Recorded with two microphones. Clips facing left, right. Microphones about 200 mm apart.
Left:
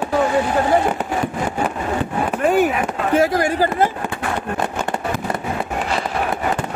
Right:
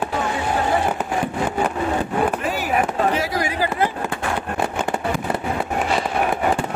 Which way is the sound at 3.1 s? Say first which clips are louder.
Left 6 dB; 50° left (ahead or behind).